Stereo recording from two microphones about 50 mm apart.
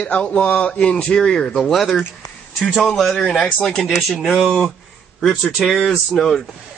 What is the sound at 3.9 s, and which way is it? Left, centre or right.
Speech, centre.